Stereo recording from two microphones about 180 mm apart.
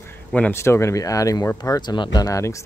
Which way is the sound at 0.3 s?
10° left (ahead or behind).